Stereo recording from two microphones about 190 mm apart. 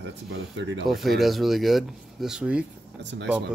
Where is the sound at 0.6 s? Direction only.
75° right (ahead or behind).